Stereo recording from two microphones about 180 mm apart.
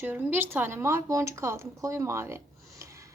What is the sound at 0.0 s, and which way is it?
Speech, 10° right (ahead or behind).